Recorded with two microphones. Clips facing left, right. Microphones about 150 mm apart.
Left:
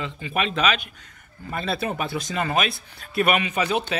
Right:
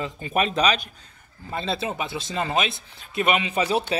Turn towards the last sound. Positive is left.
turn(degrees=-30)  # may be behind; listen again after turning